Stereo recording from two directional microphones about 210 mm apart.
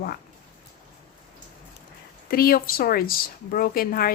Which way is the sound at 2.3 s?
45° left (ahead or behind).